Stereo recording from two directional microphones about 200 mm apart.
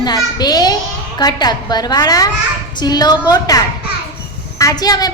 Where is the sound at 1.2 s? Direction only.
20° left (ahead or behind).